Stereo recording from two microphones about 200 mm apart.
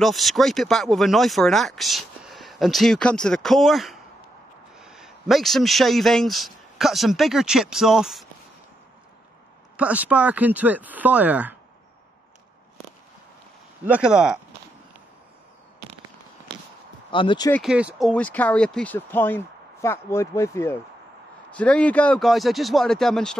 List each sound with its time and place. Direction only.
0.0 s a man's voice: centre (ahead or behind)
9.8 s speech: 5° right (ahead or behind)
13.8 s speech: 5° right (ahead or behind)
17.1 s speech: 25° left (ahead or behind)
17.5 s speech: centre (ahead or behind)